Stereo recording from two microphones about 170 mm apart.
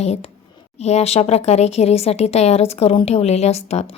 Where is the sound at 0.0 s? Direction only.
40° left (ahead or behind).